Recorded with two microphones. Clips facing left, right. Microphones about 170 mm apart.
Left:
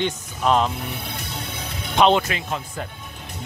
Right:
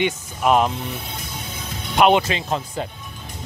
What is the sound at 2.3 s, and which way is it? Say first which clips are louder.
Speech: right 3 dB; 25° right (ahead or behind).